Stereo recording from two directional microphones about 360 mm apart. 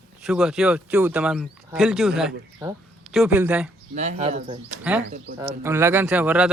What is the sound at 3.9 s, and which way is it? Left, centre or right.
Speech, centre.